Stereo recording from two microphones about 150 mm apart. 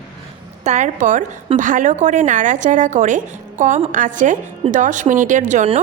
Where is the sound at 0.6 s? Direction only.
50° right (ahead or behind).